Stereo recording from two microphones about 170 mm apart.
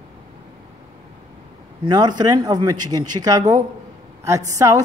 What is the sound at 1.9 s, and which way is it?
A woman's voice, 25° right (ahead or behind).